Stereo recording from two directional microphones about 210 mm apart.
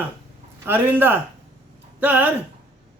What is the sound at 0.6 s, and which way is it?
Speech, 10° right (ahead or behind).